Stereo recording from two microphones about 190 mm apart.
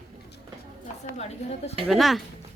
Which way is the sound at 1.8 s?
Centre (ahead or behind).